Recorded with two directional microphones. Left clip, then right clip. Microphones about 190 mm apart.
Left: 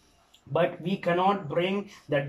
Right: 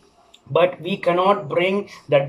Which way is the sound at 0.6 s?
10° left (ahead or behind).